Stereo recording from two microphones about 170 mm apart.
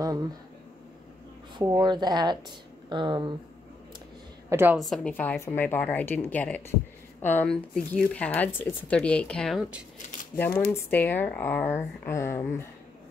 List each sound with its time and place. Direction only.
0.0 s speech: 20° right (ahead or behind)
1.6 s speech: 25° right (ahead or behind)
4.5 s a woman's voice: 15° right (ahead or behind)
4.7 s speech: centre (ahead or behind)
10.7 s speech: 10° left (ahead or behind)